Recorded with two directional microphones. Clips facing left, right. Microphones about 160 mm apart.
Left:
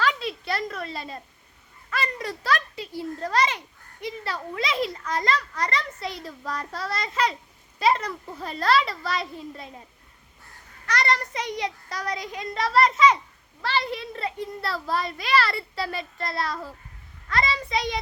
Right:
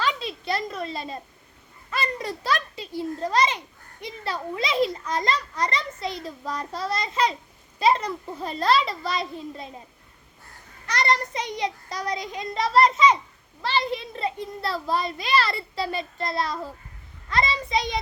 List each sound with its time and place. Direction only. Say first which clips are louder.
0.0 s a sound: left 1 dB; 20° right (ahead or behind)
1.9 s a child's voice: right 1 dB; 25° right (ahead or behind)
10.8 s a child's voice: right 1 dB; 25° right (ahead or behind)